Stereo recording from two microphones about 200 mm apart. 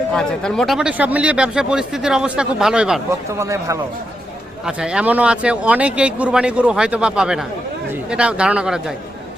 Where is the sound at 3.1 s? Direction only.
15° right (ahead or behind).